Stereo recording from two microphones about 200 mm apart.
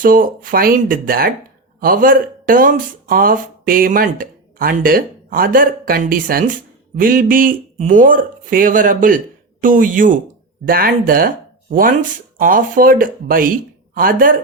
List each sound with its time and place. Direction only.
0.0 s speech: 45° right (ahead or behind)
12.4 s speech: 45° right (ahead or behind)